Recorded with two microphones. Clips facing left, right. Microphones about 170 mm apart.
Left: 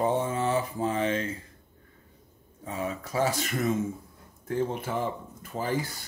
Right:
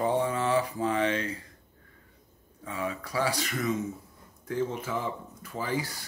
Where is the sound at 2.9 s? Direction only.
25° left (ahead or behind).